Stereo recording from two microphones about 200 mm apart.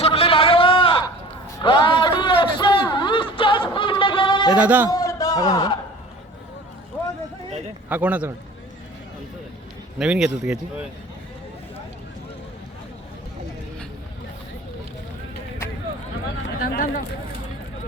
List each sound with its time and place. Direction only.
0.0 s a sound: 30° left (ahead or behind)
4.5 s a man's voice: 5° right (ahead or behind)
4.9 s a sound: 20° left (ahead or behind)
7.9 s a man's voice: 10° right (ahead or behind)
10.0 s speech: 5° right (ahead or behind)
16.6 s speech: 45° left (ahead or behind)